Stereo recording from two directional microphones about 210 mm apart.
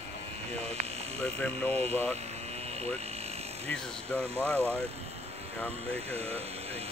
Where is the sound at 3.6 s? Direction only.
5° left (ahead or behind).